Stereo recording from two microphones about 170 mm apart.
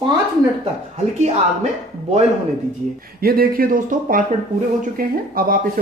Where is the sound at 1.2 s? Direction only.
40° right (ahead or behind).